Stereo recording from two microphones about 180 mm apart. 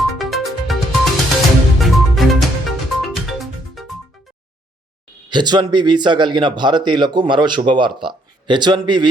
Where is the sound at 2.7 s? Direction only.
Centre (ahead or behind).